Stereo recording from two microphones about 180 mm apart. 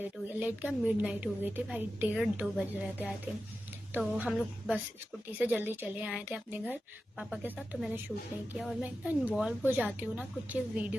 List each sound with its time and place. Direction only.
0.0 s a woman's voice: 10° right (ahead or behind)